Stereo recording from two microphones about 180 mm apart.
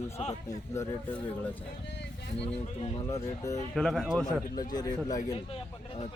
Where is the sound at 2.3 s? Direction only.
30° left (ahead or behind).